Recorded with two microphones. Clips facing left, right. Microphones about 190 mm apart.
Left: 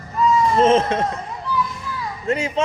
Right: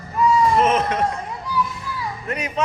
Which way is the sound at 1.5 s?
10° right (ahead or behind).